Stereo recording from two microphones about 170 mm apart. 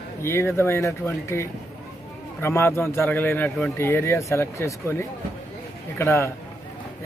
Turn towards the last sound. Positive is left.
turn(degrees=15)  # may be behind; listen again after turning